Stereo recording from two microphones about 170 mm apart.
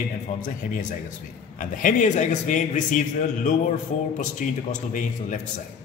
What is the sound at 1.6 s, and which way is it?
A man's voice, 50° left (ahead or behind).